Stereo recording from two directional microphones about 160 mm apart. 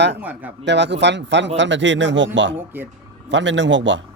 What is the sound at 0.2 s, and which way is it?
Speech, 10° right (ahead or behind).